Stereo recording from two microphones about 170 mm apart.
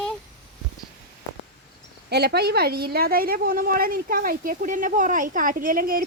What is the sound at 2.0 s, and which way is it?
A woman's voice, 75° right (ahead or behind).